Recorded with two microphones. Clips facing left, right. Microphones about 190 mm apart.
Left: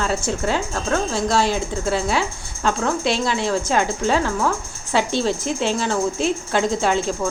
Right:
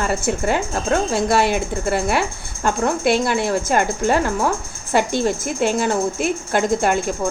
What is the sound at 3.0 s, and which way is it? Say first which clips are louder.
Speech: right 6 dB; 55° right (ahead or behind).